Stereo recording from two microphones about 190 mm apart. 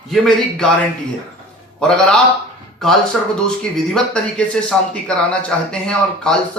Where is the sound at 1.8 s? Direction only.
5° left (ahead or behind).